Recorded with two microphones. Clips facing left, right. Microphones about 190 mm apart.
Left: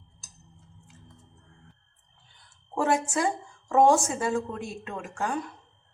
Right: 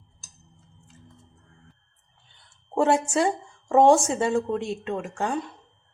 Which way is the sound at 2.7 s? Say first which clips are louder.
Right 4 dB; 30° right (ahead or behind).